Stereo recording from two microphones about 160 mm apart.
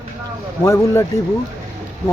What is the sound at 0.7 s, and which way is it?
Speech, 15° left (ahead or behind).